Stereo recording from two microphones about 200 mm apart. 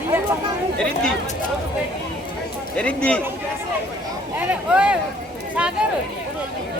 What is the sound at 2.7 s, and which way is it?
Speech, 5° left (ahead or behind).